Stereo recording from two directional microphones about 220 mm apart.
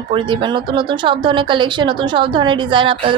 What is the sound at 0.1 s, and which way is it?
A woman's voice, 20° right (ahead or behind).